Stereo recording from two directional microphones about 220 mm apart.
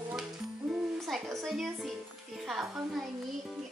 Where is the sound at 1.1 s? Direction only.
Centre (ahead or behind).